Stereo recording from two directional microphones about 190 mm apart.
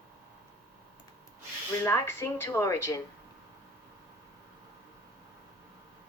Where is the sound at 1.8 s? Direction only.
15° left (ahead or behind).